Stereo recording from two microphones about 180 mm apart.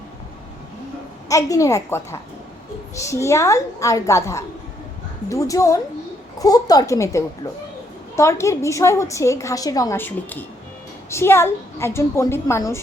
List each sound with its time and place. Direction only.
1.3 s a woman's voice: 20° left (ahead or behind)